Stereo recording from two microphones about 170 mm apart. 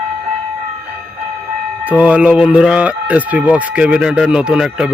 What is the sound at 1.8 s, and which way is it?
Speech, 10° right (ahead or behind).